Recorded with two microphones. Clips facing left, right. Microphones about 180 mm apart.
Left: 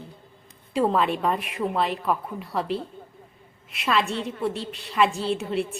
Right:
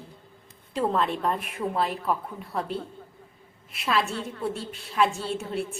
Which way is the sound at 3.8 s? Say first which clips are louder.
Left 2 dB; centre (ahead or behind).